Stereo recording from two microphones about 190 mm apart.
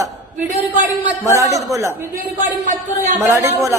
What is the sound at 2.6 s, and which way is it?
Speech, 40° right (ahead or behind).